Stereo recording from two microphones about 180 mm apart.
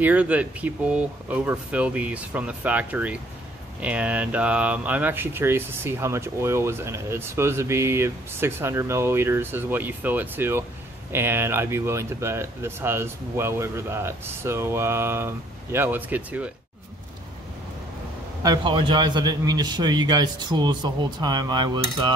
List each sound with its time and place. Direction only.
0.0 s speech: 10° right (ahead or behind)
18.4 s a man's voice: 25° right (ahead or behind)